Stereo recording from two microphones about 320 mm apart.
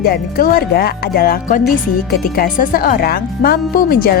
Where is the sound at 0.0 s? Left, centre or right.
Left.